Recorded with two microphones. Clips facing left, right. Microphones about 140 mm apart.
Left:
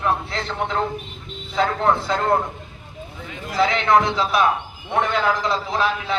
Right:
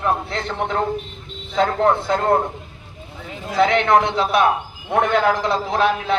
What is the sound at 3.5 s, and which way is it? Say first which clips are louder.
A man's voice: right 2 dB; 55° right (ahead or behind).